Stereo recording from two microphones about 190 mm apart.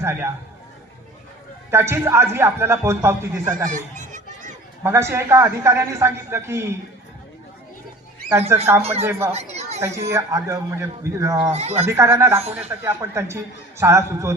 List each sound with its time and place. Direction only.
0.0 s a man's voice: 15° right (ahead or behind)
1.7 s speech: 15° right (ahead or behind)
3.7 s fowl: 40° right (ahead or behind)
4.8 s speech: 15° right (ahead or behind)
8.3 s speech: 15° right (ahead or behind)
8.8 s speech: 35° right (ahead or behind)
9.0 s speech: 15° right (ahead or behind)
9.3 s speech: 35° right (ahead or behind)
9.8 s speech: 15° right (ahead or behind)
11.5 s speech: 35° right (ahead or behind)
11.9 s speech: 15° right (ahead or behind)